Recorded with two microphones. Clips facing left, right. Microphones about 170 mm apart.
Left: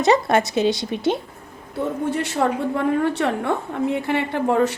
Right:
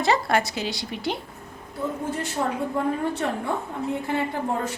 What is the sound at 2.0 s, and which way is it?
A woman's voice, 75° left (ahead or behind).